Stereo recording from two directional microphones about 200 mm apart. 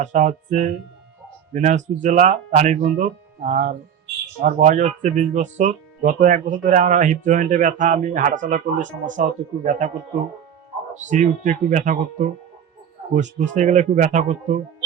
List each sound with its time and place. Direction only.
0.0 s speech: 35° right (ahead or behind)
10.9 s speech: 40° right (ahead or behind)
13.5 s speech: 40° right (ahead or behind)